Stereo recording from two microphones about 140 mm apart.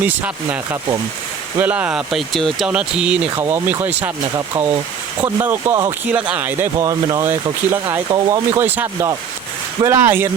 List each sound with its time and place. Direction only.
0.0 s speech: 10° right (ahead or behind)
3.3 s speech: 20° right (ahead or behind)
4.4 s speech: 25° right (ahead or behind)
5.2 s speech: 15° right (ahead or behind)